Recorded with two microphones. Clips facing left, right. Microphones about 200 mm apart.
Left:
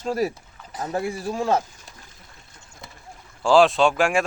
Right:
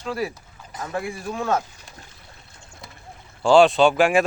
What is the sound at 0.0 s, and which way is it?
Speech, 45° left (ahead or behind).